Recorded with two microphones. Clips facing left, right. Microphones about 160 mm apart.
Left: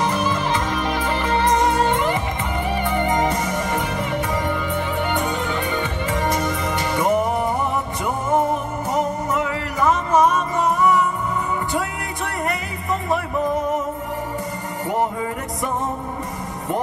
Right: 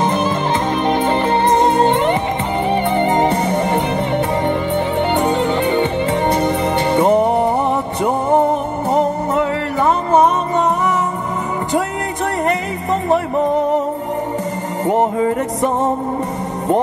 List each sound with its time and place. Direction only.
0.0 s music: 25° right (ahead or behind)
14.9 s music: 30° right (ahead or behind)